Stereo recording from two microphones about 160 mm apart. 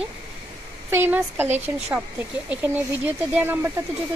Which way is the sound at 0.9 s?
15° right (ahead or behind).